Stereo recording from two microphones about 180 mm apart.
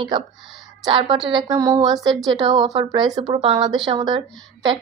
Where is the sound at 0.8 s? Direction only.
30° right (ahead or behind).